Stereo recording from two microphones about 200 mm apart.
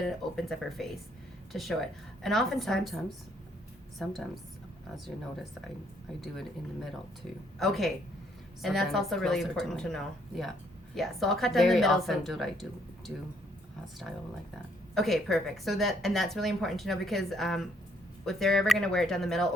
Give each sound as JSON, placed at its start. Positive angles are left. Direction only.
{"t": 0.0, "sound": "speech", "side_deg": 0}
{"t": 7.6, "sound": "speech", "side_deg": 0}
{"t": 14.9, "sound": "speech", "side_deg": 0}